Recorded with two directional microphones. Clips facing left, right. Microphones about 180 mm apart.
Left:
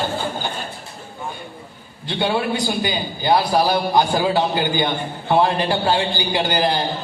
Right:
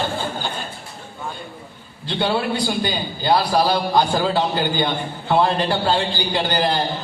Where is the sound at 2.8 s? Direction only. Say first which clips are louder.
Even; 20° left (ahead or behind).